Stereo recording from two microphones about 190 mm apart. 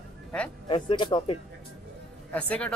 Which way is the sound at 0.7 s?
25° left (ahead or behind).